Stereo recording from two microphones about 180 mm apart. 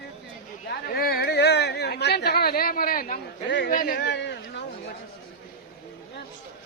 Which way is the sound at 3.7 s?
50° left (ahead or behind).